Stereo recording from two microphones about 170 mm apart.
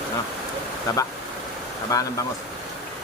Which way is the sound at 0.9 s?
20° left (ahead or behind).